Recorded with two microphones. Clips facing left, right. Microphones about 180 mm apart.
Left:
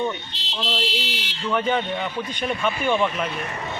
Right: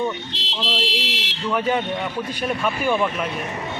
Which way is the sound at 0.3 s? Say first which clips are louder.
Right 1 dB; 90° right.